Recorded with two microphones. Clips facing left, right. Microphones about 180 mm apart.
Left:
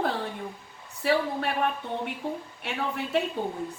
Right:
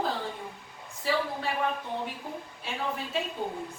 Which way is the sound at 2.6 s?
65° left (ahead or behind).